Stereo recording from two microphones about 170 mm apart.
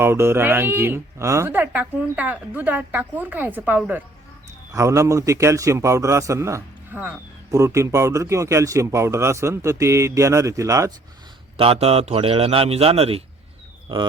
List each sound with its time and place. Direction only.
0.0 s a man's voice: 15° right (ahead or behind)
11.5 s a man's voice: 35° right (ahead or behind)